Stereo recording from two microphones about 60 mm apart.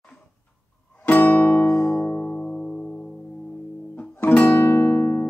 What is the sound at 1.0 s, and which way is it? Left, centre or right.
Music, left.